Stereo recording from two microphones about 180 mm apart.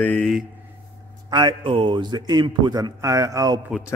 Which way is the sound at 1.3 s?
25° right (ahead or behind).